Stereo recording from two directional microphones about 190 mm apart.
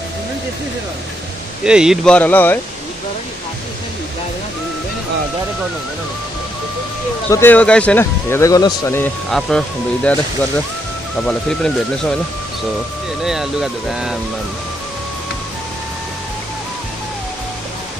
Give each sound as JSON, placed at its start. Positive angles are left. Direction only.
{"t": 1.6, "sound": "speech", "side_deg": -5}
{"t": 2.1, "sound": "speech", "side_deg": 10}
{"t": 7.2, "sound": "speech", "side_deg": 10}
{"t": 11.2, "sound": "speech", "side_deg": 5}
{"t": 13.2, "sound": "speech", "side_deg": 0}